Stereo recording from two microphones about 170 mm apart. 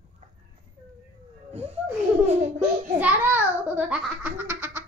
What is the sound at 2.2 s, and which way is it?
Laughter, 40° right (ahead or behind).